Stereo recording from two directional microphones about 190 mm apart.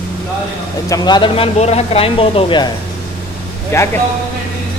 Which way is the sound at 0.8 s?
20° left (ahead or behind).